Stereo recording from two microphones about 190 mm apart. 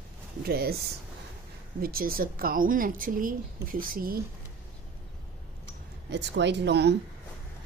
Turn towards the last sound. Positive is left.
turn(degrees=-60)  # may be behind; listen again after turning